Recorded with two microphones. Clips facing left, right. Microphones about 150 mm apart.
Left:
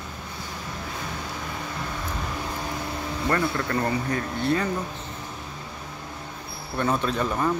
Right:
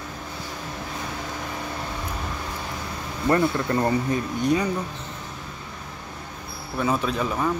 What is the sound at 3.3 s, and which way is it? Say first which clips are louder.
Speech: right 5 dB; 25° right (ahead or behind).